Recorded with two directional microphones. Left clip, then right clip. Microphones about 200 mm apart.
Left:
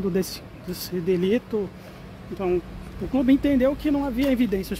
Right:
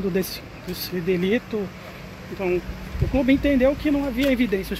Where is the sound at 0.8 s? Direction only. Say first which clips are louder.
Even; 10° left (ahead or behind).